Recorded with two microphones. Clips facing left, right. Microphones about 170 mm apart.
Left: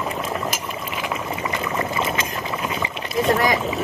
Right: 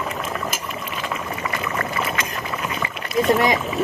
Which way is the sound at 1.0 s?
15° left (ahead or behind).